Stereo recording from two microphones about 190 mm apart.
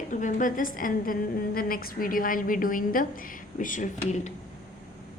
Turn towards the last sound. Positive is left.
turn(degrees=40)  # may be behind; listen again after turning